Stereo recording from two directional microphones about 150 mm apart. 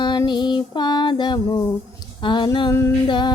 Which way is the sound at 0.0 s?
30° left (ahead or behind).